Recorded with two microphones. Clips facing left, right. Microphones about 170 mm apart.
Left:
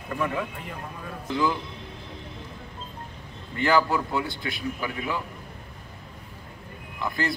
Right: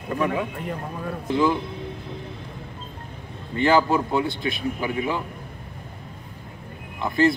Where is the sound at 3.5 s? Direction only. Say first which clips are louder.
Right 3 dB; 20° right (ahead or behind).